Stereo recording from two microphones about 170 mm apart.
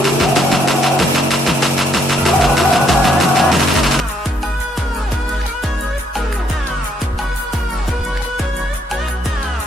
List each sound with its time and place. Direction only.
0.0 s music: centre (ahead or behind)